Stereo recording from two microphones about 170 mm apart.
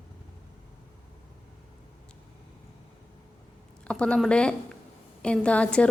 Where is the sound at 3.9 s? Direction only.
5° left (ahead or behind).